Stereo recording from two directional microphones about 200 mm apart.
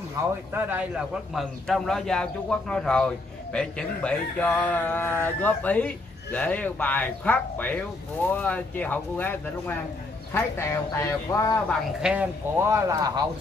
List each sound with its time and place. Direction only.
0.2 s a man's voice: 15° right (ahead or behind); by 11.6 s 15° left (ahead or behind)
12.0 s speech: 5° right (ahead or behind)